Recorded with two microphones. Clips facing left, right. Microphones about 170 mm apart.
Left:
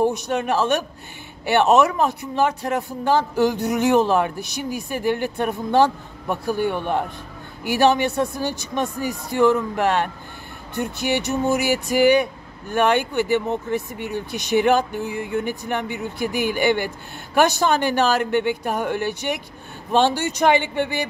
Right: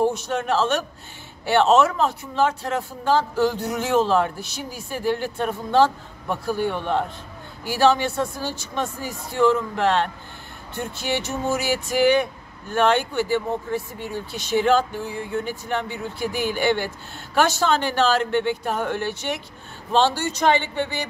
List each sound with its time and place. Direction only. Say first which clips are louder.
0.0 s speech: left 2 dB; 15° left (ahead or behind)